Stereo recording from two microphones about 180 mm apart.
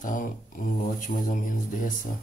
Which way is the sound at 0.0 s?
50° left (ahead or behind).